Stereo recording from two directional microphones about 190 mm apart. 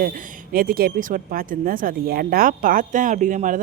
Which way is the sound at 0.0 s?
50° right (ahead or behind).